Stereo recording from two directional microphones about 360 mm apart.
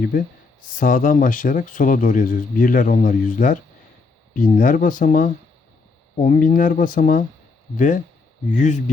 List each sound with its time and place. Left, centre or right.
0.1 s speech: left